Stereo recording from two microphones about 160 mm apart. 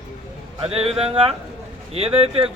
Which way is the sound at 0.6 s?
40° right (ahead or behind).